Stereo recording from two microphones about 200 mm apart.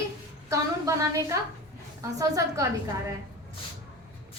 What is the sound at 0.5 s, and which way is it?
Speech, 15° right (ahead or behind).